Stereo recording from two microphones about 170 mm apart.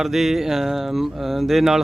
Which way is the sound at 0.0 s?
Centre (ahead or behind).